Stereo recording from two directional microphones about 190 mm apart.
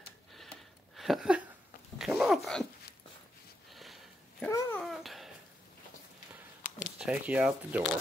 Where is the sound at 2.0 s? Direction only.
Centre (ahead or behind).